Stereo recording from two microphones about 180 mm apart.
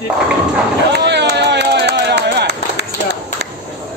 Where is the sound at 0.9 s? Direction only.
70° right (ahead or behind).